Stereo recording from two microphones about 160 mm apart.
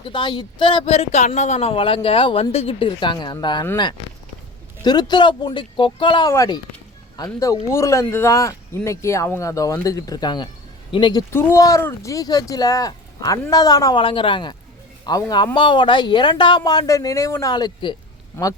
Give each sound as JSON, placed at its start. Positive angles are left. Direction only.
{"t": 0.1, "sound": "speech", "side_deg": 30}
{"t": 4.8, "sound": "speech", "side_deg": 25}
{"t": 11.3, "sound": "speech", "side_deg": 15}
{"t": 14.0, "sound": "speech", "side_deg": 35}